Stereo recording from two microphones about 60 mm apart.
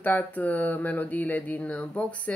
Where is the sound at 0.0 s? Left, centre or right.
Left.